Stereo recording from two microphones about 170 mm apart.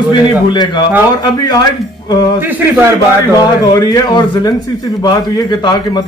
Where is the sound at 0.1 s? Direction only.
25° left (ahead or behind).